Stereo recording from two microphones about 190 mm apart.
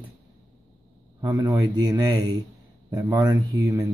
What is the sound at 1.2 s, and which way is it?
Speech, 25° right (ahead or behind).